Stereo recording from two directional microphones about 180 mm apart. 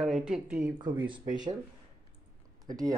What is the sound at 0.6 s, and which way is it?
Speech, 25° right (ahead or behind).